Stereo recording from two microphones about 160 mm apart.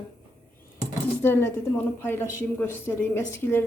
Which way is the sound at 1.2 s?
15° left (ahead or behind).